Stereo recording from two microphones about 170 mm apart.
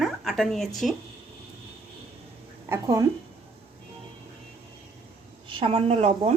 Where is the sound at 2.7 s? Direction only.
20° right (ahead or behind).